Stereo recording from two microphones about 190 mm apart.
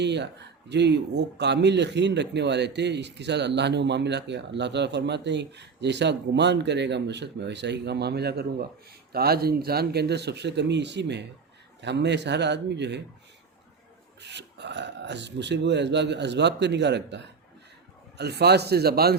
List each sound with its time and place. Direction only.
0.0 s speech: 65° right (ahead or behind)
14.2 s speech: 65° right (ahead or behind)